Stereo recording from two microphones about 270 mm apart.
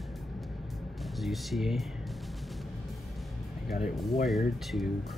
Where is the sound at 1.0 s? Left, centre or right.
Centre.